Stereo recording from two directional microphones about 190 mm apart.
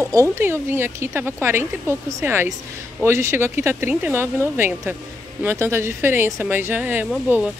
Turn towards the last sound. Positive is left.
turn(degrees=-5)  # may be behind; listen again after turning